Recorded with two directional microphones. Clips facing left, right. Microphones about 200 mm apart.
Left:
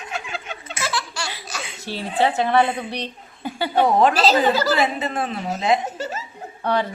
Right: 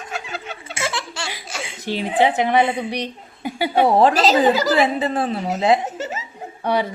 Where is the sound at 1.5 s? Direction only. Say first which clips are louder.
Right 4 dB; 25° right (ahead or behind).